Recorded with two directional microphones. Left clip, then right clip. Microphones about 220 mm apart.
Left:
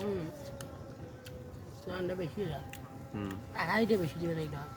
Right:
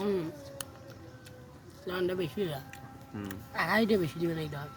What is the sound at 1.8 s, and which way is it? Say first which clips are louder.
Speech: right 5 dB; 40° right (ahead or behind).